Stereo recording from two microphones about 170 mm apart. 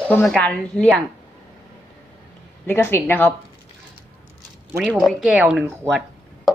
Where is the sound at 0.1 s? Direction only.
5° left (ahead or behind).